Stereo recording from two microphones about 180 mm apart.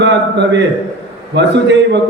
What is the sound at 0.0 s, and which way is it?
A man's voice, 75° right (ahead or behind).